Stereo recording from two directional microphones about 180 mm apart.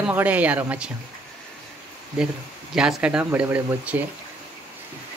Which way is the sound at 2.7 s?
5° right (ahead or behind).